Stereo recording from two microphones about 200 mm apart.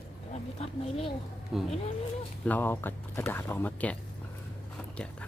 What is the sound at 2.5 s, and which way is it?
Speech, 10° left (ahead or behind).